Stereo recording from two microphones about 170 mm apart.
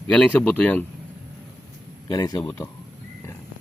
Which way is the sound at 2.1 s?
20° left (ahead or behind).